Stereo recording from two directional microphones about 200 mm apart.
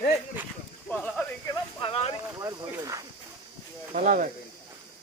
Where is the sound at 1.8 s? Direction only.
30° left (ahead or behind).